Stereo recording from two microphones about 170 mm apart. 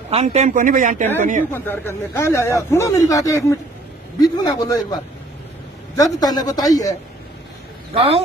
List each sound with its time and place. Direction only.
0.1 s speech: 40° right (ahead or behind)
1.5 s a man's voice: 15° left (ahead or behind)
7.9 s speech: 35° right (ahead or behind)